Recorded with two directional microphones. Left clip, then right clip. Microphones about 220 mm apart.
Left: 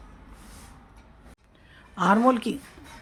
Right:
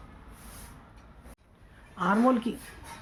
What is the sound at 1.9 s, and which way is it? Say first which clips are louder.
Speech: left 4 dB; 55° left (ahead or behind).